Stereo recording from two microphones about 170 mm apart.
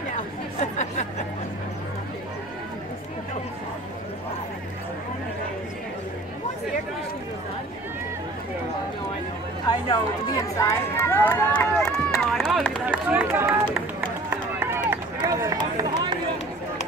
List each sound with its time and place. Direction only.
0.1 s chatter: 45° left (ahead or behind)
9.7 s speech: 25° left (ahead or behind)
12.3 s run: centre (ahead or behind)
12.8 s speech: 10° right (ahead or behind)
14.3 s run: 15° right (ahead or behind)